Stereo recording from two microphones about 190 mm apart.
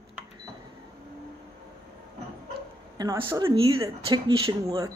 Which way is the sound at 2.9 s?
20° right (ahead or behind).